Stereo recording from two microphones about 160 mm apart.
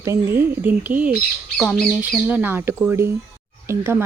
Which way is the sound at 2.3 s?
10° right (ahead or behind).